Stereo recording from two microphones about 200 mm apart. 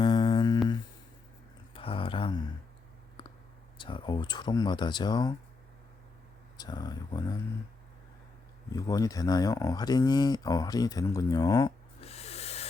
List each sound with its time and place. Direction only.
0.0 s a sound: 20° left (ahead or behind)
1.7 s a sound: 25° left (ahead or behind)
3.8 s speech: 25° left (ahead or behind)
6.6 s speech: 20° left (ahead or behind)
8.7 s speech: 15° left (ahead or behind)
11.9 s owl: 30° left (ahead or behind)